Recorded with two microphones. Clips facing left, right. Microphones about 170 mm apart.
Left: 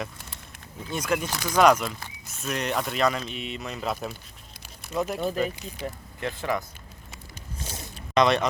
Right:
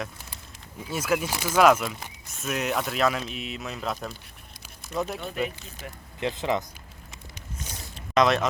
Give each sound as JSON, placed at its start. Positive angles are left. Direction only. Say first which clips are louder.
{"t": 0.9, "sound": "speech", "louder": "right 1 dB", "side_deg": -5}
{"t": 5.8, "sound": "speech", "louder": "left 7 dB", "side_deg": 30}
{"t": 6.1, "sound": "speech", "louder": "right 3 dB", "side_deg": -20}
{"t": 8.1, "sound": "speech", "louder": "even", "side_deg": 0}